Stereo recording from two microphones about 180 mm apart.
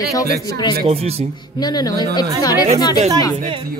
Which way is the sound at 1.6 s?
20° left (ahead or behind).